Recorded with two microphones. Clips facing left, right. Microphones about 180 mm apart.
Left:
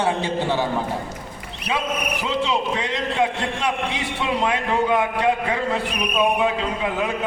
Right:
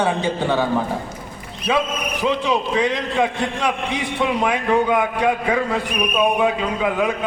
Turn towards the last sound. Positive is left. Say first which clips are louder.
# right 1 dB
turn(degrees=25)  # may be behind; listen again after turning